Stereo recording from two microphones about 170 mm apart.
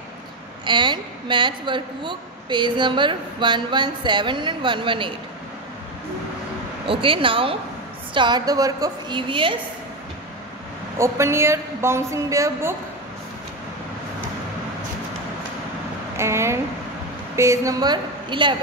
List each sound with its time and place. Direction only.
0.7 s a woman's voice: 25° right (ahead or behind)
6.9 s a woman's voice: 30° right (ahead or behind)
11.0 s a woman's voice: 15° right (ahead or behind)
16.2 s a woman's voice: 15° right (ahead or behind)